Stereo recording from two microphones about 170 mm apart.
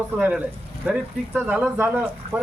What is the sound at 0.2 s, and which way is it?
Speech, 10° right (ahead or behind).